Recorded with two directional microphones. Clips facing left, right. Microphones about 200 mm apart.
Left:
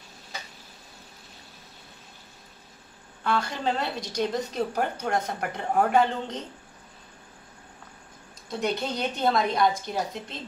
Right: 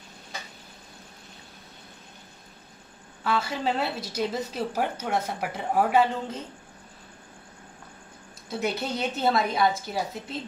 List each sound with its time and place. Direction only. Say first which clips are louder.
3.3 s a woman's voice: even; 5° right (ahead or behind)
8.5 s a woman's voice: left 1 dB; 5° right (ahead or behind)